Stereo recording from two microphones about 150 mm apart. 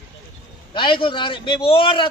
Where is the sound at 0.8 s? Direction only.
35° left (ahead or behind).